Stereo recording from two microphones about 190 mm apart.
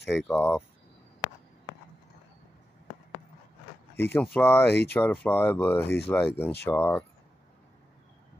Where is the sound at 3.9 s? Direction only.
10° left (ahead or behind).